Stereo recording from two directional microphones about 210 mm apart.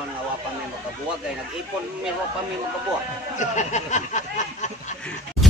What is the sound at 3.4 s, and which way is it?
Speech, 35° left (ahead or behind).